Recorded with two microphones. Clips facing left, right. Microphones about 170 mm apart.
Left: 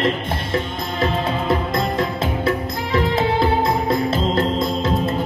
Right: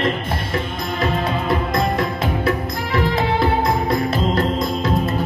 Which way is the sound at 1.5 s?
25° left (ahead or behind).